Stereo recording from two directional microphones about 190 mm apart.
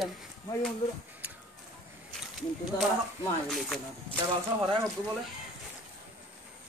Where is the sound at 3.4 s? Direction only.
Centre (ahead or behind).